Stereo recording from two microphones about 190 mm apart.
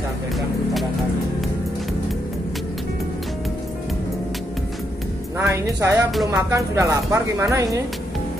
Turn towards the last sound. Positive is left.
turn(degrees=-15)  # may be behind; listen again after turning